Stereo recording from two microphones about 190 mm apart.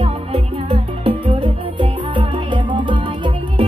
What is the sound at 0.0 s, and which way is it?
Music, 30° right (ahead or behind).